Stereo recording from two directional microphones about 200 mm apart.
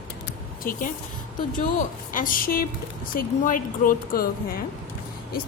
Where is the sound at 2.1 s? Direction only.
45° left (ahead or behind).